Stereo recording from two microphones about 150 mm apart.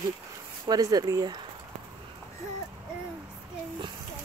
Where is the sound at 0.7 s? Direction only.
25° right (ahead or behind).